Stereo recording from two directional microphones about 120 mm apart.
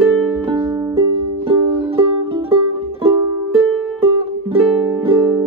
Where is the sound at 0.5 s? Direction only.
30° right (ahead or behind).